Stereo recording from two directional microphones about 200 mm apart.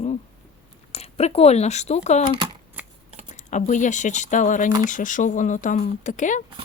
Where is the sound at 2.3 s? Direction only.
25° right (ahead or behind).